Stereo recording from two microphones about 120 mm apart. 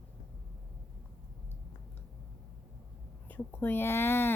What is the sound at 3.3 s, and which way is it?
Speech, 15° left (ahead or behind).